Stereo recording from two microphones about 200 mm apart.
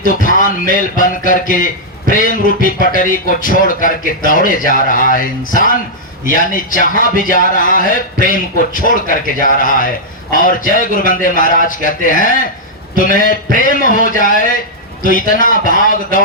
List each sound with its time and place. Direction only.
0.2 s music: 40° left (ahead or behind)
2.0 s a man's voice: 40° left (ahead or behind)